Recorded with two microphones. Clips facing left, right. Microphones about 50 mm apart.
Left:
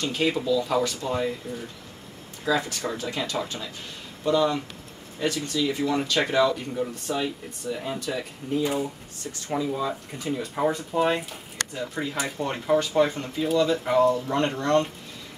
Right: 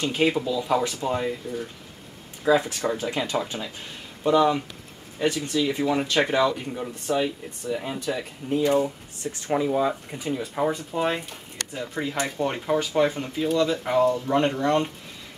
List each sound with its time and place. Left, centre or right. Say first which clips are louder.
0.0 s speech: right 2 dB; centre
2.4 s speech: right 4 dB; right
8.7 s speech: right 6 dB; centre
10.2 s speech: even; centre